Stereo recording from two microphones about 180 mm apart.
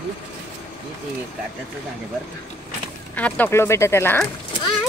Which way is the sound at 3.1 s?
10° left (ahead or behind).